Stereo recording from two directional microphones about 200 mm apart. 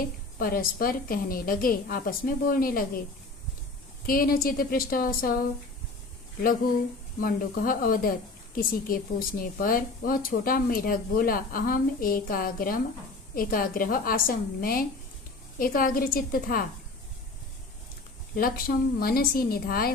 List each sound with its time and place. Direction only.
0.3 s a woman's voice: 45° left (ahead or behind)
4.0 s a woman's voice: 45° left (ahead or behind)
7.2 s a woman's voice: 45° left (ahead or behind)
18.3 s a woman's voice: 45° left (ahead or behind)